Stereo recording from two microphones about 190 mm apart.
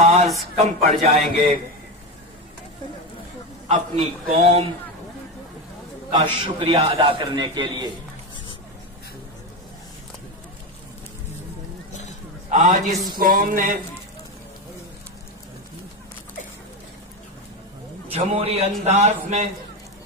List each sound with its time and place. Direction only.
0.0 s music: 35° right (ahead or behind)
0.6 s a man's voice: 35° right (ahead or behind)
3.6 s a man's voice: 35° right (ahead or behind)
6.4 s a man's voice: 30° right (ahead or behind)
11.9 s a sound: 40° left (ahead or behind)
12.4 s a man's voice: 40° right (ahead or behind)
13.2 s a sound: 45° right (ahead or behind)
18.1 s a man's voice: 30° right (ahead or behind)